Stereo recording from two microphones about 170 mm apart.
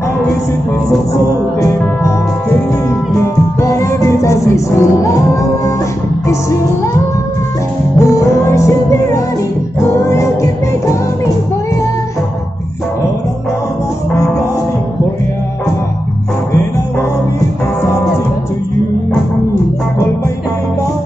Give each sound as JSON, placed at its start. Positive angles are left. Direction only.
{"t": 0.8, "sound": "music", "side_deg": 20}
{"t": 3.6, "sound": "music", "side_deg": 15}
{"t": 8.0, "sound": "music", "side_deg": 20}